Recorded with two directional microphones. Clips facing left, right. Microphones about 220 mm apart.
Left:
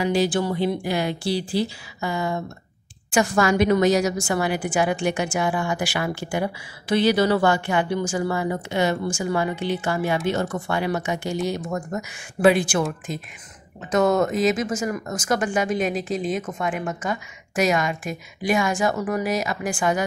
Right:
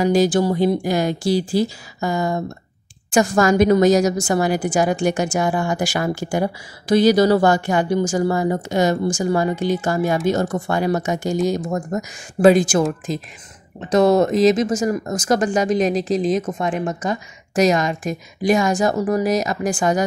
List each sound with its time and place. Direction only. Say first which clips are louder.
0.0 s a woman's voice: right 5 dB; 45° right (ahead or behind)